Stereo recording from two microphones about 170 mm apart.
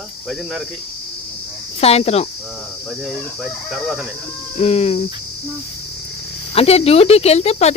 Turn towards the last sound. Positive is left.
turn(degrees=40)  # may be behind; listen again after turning